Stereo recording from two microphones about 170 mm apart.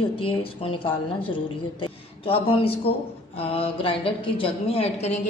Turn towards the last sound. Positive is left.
turn(degrees=40)  # may be behind; listen again after turning